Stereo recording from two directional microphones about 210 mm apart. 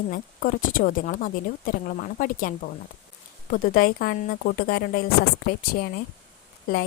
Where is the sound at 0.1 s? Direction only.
40° left (ahead or behind).